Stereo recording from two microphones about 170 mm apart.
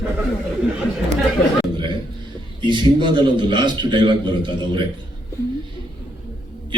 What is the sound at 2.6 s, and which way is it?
A man's voice, 30° right (ahead or behind).